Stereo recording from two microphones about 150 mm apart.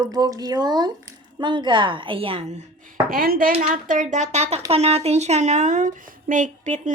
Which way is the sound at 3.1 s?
75° right (ahead or behind).